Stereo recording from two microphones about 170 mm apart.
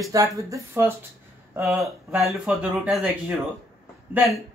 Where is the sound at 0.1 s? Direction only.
20° right (ahead or behind); by 3.3 s centre (ahead or behind).